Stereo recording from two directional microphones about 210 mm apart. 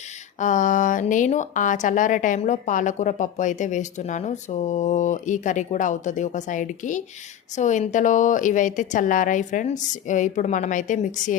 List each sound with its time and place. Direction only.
0.3 s a woman's voice: 35° left (ahead or behind)